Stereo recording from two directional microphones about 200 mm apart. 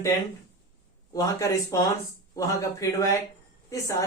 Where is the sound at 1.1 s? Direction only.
15° left (ahead or behind).